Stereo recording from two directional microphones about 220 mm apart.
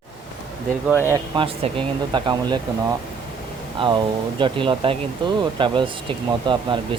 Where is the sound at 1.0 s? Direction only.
15° right (ahead or behind).